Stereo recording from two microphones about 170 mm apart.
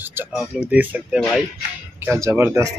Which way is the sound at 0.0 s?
15° right (ahead or behind).